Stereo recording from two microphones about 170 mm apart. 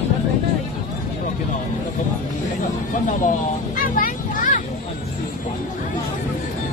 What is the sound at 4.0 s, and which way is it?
Music, 50° left (ahead or behind).